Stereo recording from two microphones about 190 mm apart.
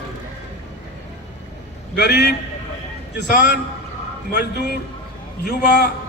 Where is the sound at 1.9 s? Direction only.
60° left (ahead or behind).